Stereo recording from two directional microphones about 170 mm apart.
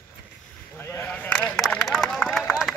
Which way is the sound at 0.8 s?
15° left (ahead or behind).